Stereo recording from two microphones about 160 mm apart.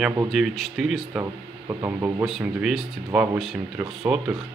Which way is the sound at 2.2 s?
5° right (ahead or behind).